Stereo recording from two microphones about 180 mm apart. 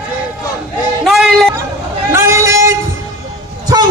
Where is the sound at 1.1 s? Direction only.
Centre (ahead or behind).